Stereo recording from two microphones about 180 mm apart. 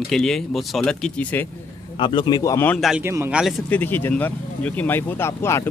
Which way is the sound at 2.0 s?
25° left (ahead or behind).